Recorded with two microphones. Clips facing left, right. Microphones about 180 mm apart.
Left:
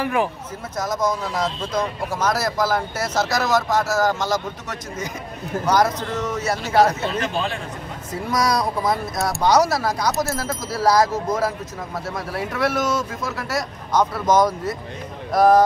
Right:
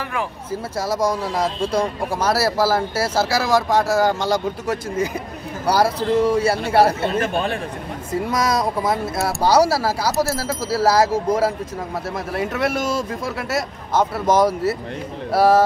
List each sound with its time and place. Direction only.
0.0 s speech: 15° left (ahead or behind)
0.7 s speech: 10° right (ahead or behind)
3.7 s speech: 30° right (ahead or behind)
7.0 s speech: 55° right (ahead or behind)
8.3 s speech: 25° right (ahead or behind)
9.2 s speech: 10° right (ahead or behind)
12.5 s speech: 25° right (ahead or behind)
14.4 s speech: 10° right (ahead or behind)